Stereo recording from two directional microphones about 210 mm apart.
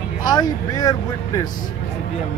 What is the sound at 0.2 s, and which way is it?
Speech, 20° left (ahead or behind).